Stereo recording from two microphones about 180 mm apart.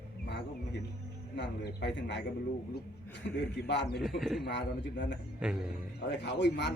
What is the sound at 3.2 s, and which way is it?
Speech, 65° left (ahead or behind).